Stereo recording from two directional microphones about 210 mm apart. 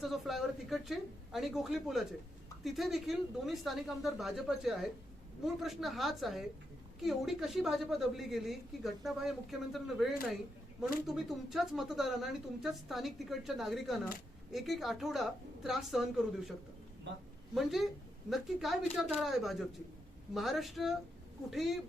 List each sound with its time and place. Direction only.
0.0 s a woman's voice: centre (ahead or behind)